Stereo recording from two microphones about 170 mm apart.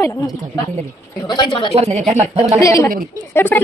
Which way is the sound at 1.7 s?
40° right (ahead or behind).